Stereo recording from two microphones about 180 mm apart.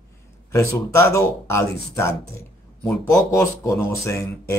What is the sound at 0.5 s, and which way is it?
Speech, 15° left (ahead or behind).